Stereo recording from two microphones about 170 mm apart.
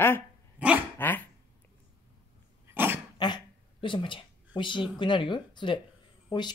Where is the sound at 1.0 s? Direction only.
10° left (ahead or behind).